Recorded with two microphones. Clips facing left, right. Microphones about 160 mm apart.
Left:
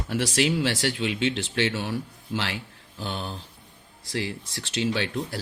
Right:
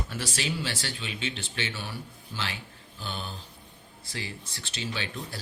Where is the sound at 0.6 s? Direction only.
75° left (ahead or behind).